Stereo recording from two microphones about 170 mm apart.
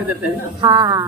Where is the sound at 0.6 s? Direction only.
25° right (ahead or behind).